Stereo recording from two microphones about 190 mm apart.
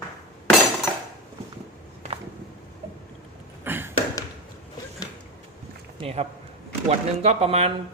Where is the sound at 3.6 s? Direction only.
10° right (ahead or behind).